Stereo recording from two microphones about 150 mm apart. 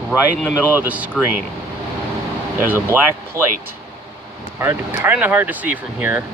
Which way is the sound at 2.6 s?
15° right (ahead or behind).